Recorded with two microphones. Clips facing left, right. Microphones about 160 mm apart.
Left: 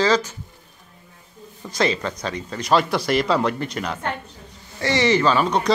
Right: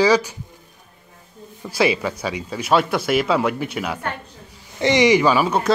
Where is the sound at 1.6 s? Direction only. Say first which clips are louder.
Right 3 dB; 5° right (ahead or behind).